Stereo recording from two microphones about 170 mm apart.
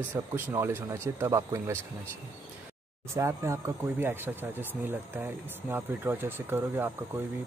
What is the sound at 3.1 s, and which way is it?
Speech, 15° right (ahead or behind).